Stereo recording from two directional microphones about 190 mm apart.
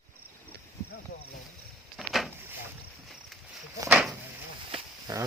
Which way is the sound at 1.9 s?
Centre (ahead or behind).